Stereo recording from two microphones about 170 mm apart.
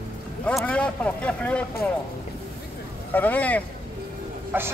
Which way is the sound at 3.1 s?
10° left (ahead or behind).